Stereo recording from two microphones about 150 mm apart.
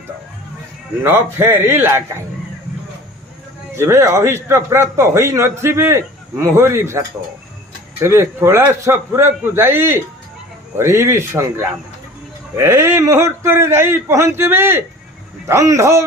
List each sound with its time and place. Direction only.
1.0 s a man's voice: 15° right (ahead or behind)
3.8 s a man's voice: 15° right (ahead or behind)